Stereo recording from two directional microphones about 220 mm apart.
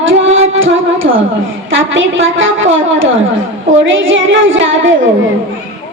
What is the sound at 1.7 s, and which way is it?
Speech, 60° right (ahead or behind).